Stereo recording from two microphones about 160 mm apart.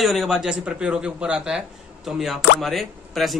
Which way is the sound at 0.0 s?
Centre (ahead or behind).